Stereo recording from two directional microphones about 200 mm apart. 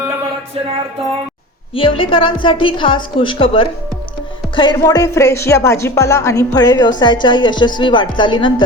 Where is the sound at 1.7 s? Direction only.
25° left (ahead or behind).